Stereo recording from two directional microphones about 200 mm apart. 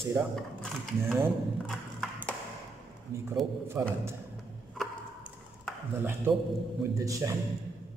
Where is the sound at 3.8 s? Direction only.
10° right (ahead or behind).